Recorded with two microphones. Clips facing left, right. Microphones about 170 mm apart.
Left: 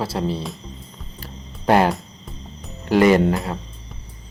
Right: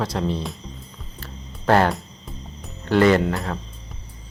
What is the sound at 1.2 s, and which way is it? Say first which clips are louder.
Music: left 1 dB; 15° left (ahead or behind).